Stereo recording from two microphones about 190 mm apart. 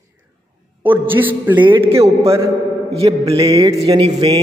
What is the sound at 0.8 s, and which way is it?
Speech, 10° right (ahead or behind).